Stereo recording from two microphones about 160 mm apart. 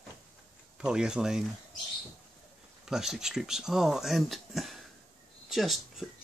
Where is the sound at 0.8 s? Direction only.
5° right (ahead or behind).